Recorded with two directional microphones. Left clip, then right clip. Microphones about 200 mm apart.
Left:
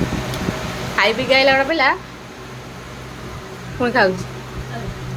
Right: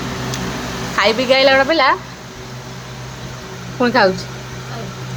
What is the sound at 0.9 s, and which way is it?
Speech, 20° right (ahead or behind).